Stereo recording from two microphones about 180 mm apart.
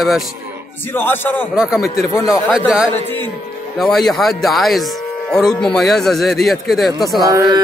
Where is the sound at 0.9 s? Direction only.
10° left (ahead or behind).